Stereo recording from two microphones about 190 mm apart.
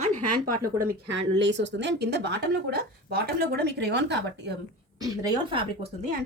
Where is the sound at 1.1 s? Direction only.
70° right (ahead or behind).